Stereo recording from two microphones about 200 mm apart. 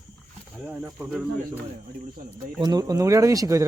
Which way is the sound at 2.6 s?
20° right (ahead or behind).